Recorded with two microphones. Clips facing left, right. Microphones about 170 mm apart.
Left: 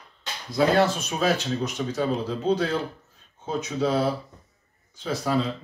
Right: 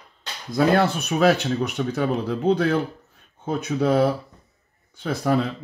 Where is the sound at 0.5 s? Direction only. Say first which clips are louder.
Right 2 dB; 60° right (ahead or behind).